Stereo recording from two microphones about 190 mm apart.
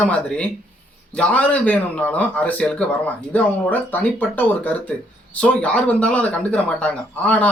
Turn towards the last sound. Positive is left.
turn(degrees=5)  # may be behind; listen again after turning